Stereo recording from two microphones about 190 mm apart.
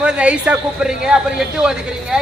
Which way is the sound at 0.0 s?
5° right (ahead or behind).